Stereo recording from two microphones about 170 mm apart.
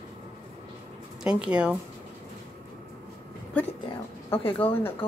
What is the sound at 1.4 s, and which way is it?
Speech, 5° right (ahead or behind).